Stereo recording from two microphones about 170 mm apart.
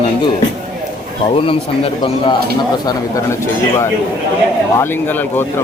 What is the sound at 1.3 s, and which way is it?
Speech, 35° left (ahead or behind).